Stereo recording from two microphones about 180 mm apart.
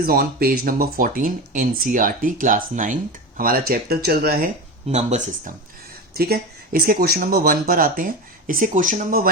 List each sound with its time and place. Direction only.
0.0 s speech: 55° right (ahead or behind); by 5.5 s 40° right (ahead or behind)
6.1 s speech: 60° right (ahead or behind)